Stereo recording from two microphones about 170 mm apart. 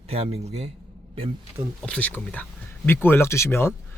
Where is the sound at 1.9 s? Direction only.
10° left (ahead or behind).